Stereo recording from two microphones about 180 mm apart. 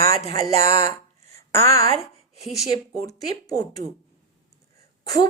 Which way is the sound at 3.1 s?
20° left (ahead or behind).